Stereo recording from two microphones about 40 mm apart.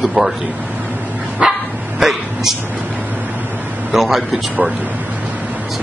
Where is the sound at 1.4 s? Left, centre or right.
Centre.